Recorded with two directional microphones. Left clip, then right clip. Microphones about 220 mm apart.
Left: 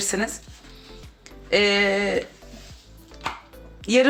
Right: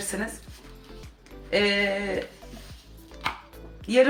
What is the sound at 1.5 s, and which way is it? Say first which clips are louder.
Speech: left 4 dB; 50° left (ahead or behind).